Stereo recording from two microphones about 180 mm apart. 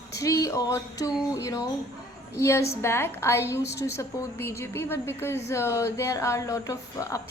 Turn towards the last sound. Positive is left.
turn(degrees=20)  # may be behind; listen again after turning